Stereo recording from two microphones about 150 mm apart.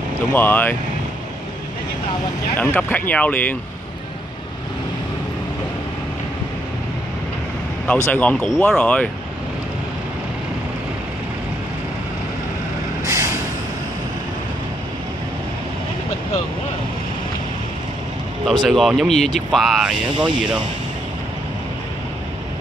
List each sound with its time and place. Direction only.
0.3 s speech: 10° left (ahead or behind)
2.5 s speech: 10° left (ahead or behind)
7.8 s speech: 10° left (ahead or behind)
13.0 s vehicle: 20° right (ahead or behind)
18.6 s speech: centre (ahead or behind)